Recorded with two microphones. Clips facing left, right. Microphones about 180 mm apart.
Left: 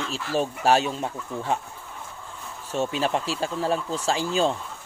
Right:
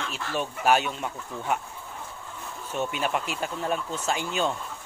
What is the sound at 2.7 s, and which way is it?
Speech, 30° left (ahead or behind).